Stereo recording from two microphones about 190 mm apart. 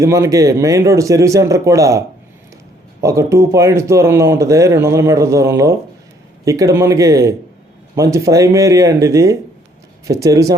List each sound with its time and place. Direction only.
0.0 s speech: 15° right (ahead or behind)